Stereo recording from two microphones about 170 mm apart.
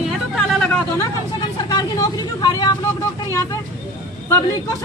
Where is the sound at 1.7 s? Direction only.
20° left (ahead or behind).